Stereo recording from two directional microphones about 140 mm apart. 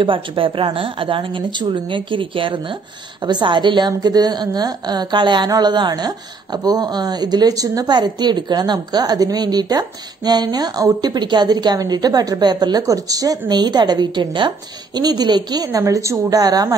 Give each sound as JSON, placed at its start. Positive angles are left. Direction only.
{"t": 0.0, "sound": "a woman's voice", "side_deg": -40}